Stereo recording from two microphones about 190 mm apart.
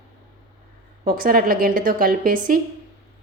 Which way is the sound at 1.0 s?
50° right (ahead or behind).